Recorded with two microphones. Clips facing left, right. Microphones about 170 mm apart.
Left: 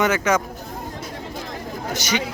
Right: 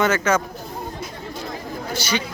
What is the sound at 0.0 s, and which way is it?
Speech, 15° left (ahead or behind).